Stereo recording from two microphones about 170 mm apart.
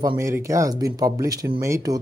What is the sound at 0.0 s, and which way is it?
Speech, 20° right (ahead or behind).